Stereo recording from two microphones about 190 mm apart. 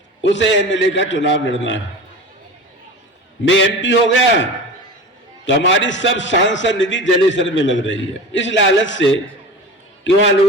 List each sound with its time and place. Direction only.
0.2 s a man's voice: 75° left (ahead or behind)
3.4 s a man's voice: 75° left (ahead or behind)
5.6 s a man's voice: 75° left (ahead or behind)